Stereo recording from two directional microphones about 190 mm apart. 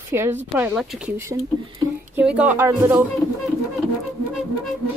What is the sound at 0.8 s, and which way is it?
Speech, centre (ahead or behind).